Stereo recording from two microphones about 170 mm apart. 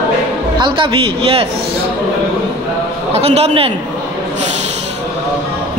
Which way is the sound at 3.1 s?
40° right (ahead or behind).